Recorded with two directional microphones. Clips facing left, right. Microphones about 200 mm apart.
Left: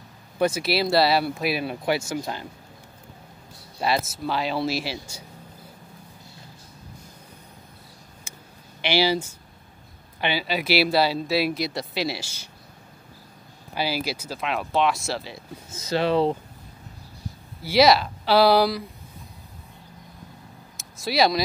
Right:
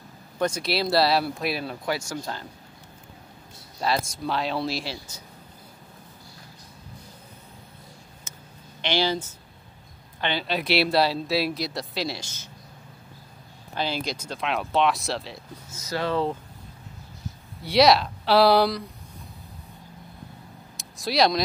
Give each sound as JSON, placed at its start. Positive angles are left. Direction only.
{"t": 0.4, "sound": "speech", "side_deg": 5}
{"t": 2.1, "sound": "speech", "side_deg": 15}
{"t": 3.8, "sound": "speech", "side_deg": 5}
{"t": 8.3, "sound": "a sound", "side_deg": 10}
{"t": 8.8, "sound": "speech", "side_deg": 10}
{"t": 13.7, "sound": "speech", "side_deg": 5}
{"t": 15.8, "sound": "speech", "side_deg": 25}
{"t": 16.1, "sound": "speech", "side_deg": 15}
{"t": 17.6, "sound": "speech", "side_deg": 0}
{"t": 20.7, "sound": "a sound", "side_deg": 0}